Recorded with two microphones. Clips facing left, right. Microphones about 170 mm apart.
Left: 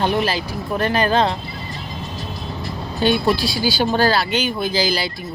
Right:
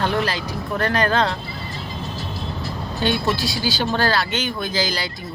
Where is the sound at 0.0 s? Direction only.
20° left (ahead or behind).